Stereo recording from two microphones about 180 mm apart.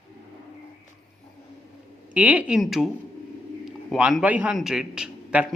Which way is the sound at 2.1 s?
10° right (ahead or behind).